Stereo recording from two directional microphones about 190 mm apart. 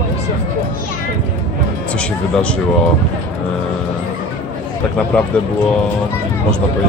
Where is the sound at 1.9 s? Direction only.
5° left (ahead or behind).